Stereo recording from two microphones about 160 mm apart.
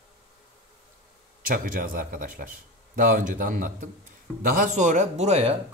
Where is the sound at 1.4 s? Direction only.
60° right (ahead or behind).